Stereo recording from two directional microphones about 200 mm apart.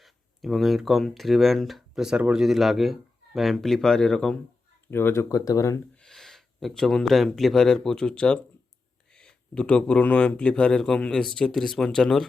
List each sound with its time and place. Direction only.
0.0 s speech: centre (ahead or behind); by 5.8 s 15° left (ahead or behind)
6.0 s speech: centre (ahead or behind)